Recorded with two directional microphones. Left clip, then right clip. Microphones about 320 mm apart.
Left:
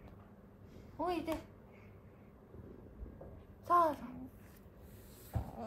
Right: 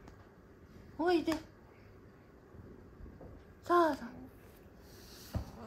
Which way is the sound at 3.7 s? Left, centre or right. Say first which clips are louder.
Right 1 dB; right.